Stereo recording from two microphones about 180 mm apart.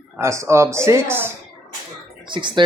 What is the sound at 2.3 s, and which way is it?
Speech, 25° right (ahead or behind).